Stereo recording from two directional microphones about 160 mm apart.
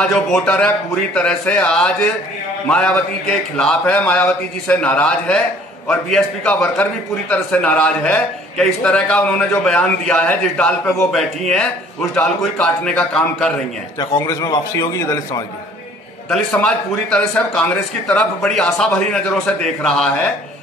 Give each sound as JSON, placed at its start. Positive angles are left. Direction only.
{"t": 0.0, "sound": "a man's voice", "side_deg": 5}
{"t": 13.9, "sound": "a man's voice", "side_deg": 20}
{"t": 16.3, "sound": "speech", "side_deg": 5}